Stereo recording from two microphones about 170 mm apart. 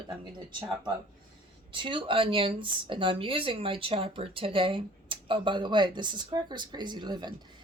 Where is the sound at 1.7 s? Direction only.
30° right (ahead or behind).